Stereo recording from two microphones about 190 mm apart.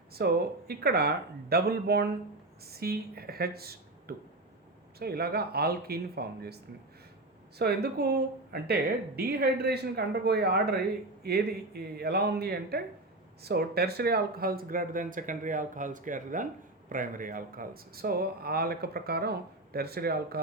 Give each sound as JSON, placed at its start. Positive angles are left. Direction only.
{"t": 0.2, "sound": "a woman's voice", "side_deg": -55}
{"t": 7.6, "sound": "a woman's voice", "side_deg": -55}